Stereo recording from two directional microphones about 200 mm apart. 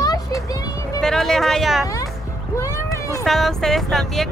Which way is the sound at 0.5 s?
20° left (ahead or behind).